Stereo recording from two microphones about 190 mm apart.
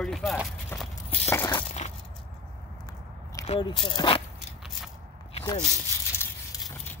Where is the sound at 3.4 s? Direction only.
35° left (ahead or behind).